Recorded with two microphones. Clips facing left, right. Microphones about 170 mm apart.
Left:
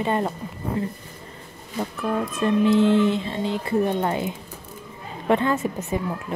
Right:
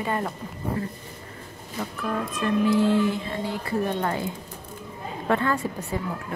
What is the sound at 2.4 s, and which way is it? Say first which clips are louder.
Speech: left 3 dB; 20° left (ahead or behind).